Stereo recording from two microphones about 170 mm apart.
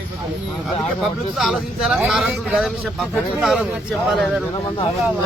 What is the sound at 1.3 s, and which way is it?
A man's voice, centre (ahead or behind).